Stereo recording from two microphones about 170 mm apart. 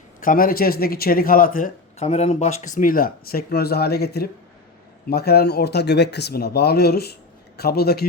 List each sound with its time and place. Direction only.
0.2 s speech: 55° left (ahead or behind)
2.0 s speech: 40° left (ahead or behind); by 8.0 s 70° left (ahead or behind)